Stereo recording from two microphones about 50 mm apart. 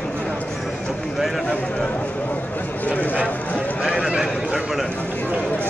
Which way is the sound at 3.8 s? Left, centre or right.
Centre.